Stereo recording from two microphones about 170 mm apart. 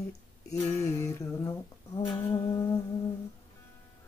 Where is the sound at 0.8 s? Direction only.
15° left (ahead or behind).